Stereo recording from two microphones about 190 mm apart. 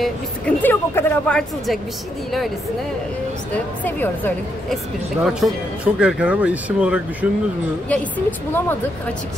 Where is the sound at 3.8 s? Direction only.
10° left (ahead or behind).